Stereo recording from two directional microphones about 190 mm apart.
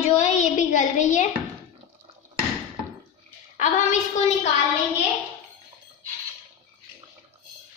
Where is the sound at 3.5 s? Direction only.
40° left (ahead or behind).